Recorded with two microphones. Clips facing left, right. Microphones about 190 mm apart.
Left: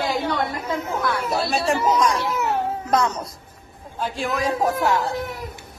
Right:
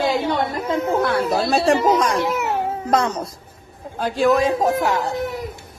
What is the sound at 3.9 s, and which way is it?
Speech, 40° right (ahead or behind).